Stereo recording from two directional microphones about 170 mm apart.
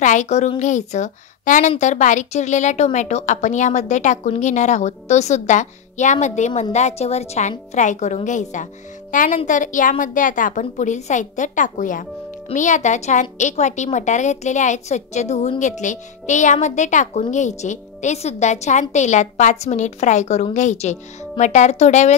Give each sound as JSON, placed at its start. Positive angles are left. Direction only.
{"t": 0.0, "sound": "a woman's voice", "side_deg": 45}